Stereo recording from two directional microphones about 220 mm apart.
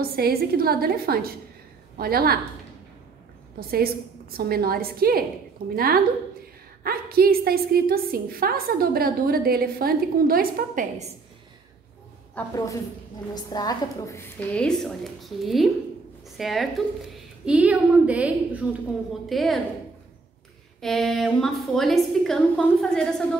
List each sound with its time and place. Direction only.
0.0 s a woman's voice: 45° right (ahead or behind)
3.5 s a woman's voice: 45° right (ahead or behind)
6.8 s a woman's voice: 45° right (ahead or behind)
12.4 s a woman's voice: 15° left (ahead or behind)
20.8 s a woman's voice: centre (ahead or behind)